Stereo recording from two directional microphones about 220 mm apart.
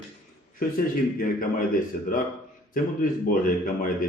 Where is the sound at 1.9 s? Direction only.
40° left (ahead or behind).